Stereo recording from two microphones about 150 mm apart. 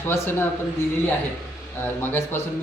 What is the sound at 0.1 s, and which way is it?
Speech, 15° left (ahead or behind).